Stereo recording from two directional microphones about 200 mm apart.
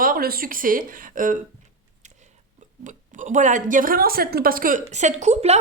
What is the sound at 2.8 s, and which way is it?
A woman's voice, 40° right (ahead or behind).